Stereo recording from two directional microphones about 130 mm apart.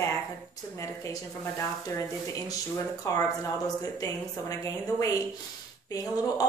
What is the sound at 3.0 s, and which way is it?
Speech, 25° left (ahead or behind).